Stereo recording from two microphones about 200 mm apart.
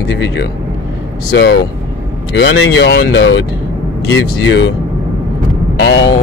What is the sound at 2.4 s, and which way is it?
Speech, 60° left (ahead or behind).